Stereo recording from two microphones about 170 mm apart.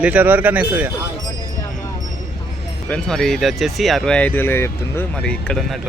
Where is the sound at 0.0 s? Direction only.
10° right (ahead or behind).